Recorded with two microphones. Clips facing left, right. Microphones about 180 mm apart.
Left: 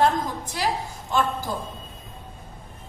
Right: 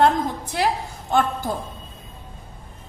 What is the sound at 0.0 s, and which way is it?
Speech, 60° right (ahead or behind).